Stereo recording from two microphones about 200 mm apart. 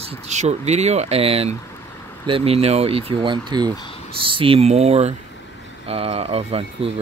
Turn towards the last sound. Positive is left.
turn(degrees=-30)  # may be behind; listen again after turning